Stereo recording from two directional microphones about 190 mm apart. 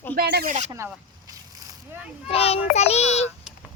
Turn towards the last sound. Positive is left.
turn(degrees=35)  # may be behind; listen again after turning